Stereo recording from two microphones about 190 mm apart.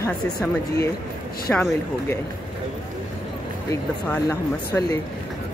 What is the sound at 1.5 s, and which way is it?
Speech, 5° left (ahead or behind).